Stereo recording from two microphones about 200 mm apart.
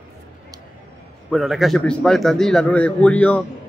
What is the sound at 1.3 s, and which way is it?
A man's voice, centre (ahead or behind).